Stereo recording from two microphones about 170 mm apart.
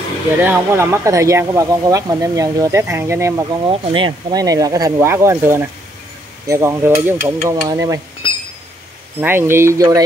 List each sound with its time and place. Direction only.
0.4 s speech: 10° right (ahead or behind)
3.6 s speech: 30° right (ahead or behind)
9.2 s speech: 15° right (ahead or behind)